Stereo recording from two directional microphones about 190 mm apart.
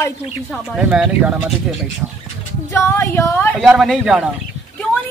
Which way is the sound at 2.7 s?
15° left (ahead or behind).